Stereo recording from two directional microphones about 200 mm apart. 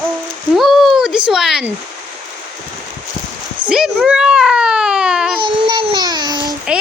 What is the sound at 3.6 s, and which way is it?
Baby cry, centre (ahead or behind).